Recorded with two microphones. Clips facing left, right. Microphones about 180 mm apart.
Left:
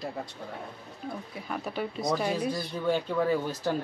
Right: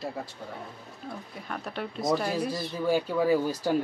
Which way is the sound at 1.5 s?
Centre (ahead or behind).